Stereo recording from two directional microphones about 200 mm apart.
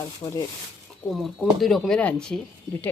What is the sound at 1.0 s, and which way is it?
Speech, centre (ahead or behind).